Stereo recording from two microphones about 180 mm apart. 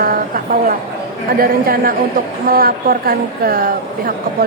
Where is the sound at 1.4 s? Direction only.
55° right (ahead or behind).